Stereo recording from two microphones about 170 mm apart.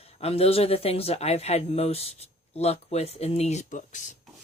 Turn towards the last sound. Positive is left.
turn(degrees=45)  # may be behind; listen again after turning